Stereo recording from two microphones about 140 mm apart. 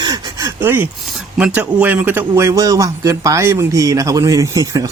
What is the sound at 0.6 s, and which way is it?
A man's voice, 15° right (ahead or behind).